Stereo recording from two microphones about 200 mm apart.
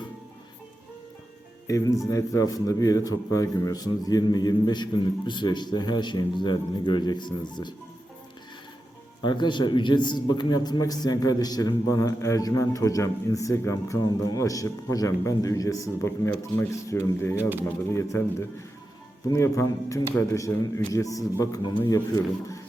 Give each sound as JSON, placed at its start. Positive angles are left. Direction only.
{"t": 1.6, "sound": "a man's voice", "side_deg": 15}
{"t": 9.2, "sound": "a man's voice", "side_deg": 25}